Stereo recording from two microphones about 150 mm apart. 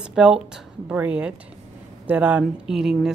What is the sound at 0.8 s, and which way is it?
Speech, 10° right (ahead or behind).